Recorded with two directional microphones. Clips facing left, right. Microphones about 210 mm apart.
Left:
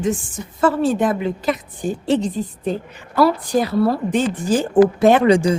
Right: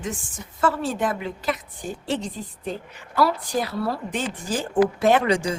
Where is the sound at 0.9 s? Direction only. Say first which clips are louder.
Left 7 dB; 25° left (ahead or behind).